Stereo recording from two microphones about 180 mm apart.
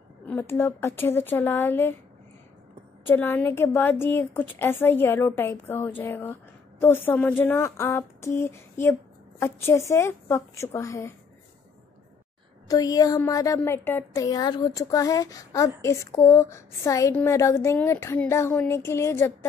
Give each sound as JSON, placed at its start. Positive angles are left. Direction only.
{"t": 0.3, "sound": "speech", "side_deg": 15}
{"t": 3.1, "sound": "speech", "side_deg": 10}
{"t": 12.6, "sound": "a sound", "side_deg": 20}
{"t": 13.6, "sound": "speech", "side_deg": 10}